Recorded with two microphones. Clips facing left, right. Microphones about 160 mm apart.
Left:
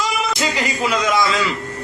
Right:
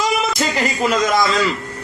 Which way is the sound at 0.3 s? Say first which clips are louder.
Right 2 dB; 45° right (ahead or behind).